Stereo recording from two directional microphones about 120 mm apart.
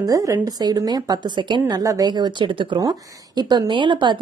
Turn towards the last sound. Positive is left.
turn(degrees=-40)  # may be behind; listen again after turning